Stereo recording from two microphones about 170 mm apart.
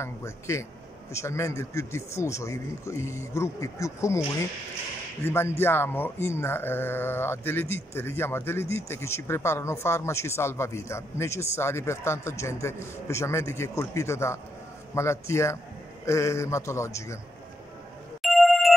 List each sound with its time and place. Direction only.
0.0 s speech: 15° left (ahead or behind)
5.2 s speech: 15° left (ahead or behind)
18.2 s telephone bell ringing: centre (ahead or behind)